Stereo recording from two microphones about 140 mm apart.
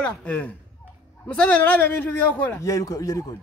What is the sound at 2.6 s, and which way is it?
Speech, 25° left (ahead or behind).